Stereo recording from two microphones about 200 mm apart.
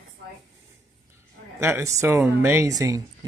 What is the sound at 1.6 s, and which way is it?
A woman's voice, 10° right (ahead or behind).